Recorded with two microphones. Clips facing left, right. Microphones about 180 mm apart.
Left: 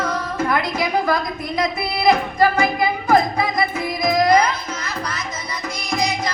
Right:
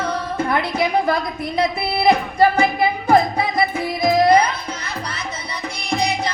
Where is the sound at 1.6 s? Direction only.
30° right (ahead or behind).